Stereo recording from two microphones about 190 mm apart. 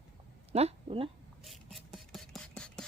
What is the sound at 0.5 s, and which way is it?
Speech, 30° right (ahead or behind).